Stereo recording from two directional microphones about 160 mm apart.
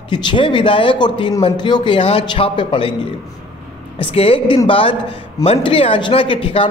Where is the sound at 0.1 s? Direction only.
30° left (ahead or behind).